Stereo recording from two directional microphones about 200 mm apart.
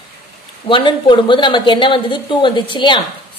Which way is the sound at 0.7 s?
25° left (ahead or behind).